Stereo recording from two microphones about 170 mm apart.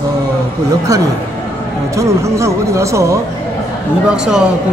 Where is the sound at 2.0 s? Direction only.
15° right (ahead or behind).